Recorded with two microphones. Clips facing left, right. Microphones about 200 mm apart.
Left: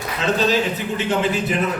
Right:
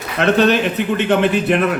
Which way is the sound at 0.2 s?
65° right (ahead or behind).